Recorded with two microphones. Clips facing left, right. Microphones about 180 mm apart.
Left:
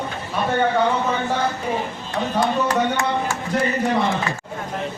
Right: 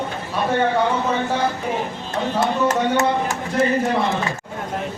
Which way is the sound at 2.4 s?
20° right (ahead or behind).